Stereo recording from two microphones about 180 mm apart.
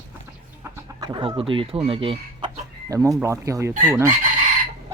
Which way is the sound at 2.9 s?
20° right (ahead or behind).